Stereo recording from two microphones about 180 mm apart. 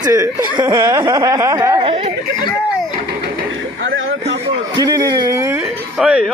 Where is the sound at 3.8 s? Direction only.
65° right (ahead or behind).